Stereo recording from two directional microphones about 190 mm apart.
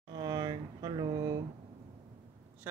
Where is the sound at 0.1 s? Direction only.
20° right (ahead or behind).